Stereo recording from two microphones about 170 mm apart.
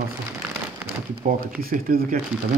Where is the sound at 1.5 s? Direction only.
60° right (ahead or behind).